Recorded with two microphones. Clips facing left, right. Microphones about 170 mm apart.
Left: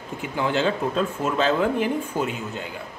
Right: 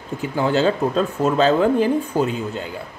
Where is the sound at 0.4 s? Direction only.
35° right (ahead or behind).